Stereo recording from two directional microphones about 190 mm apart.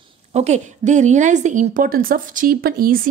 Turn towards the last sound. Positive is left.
turn(degrees=-50)  # may be behind; listen again after turning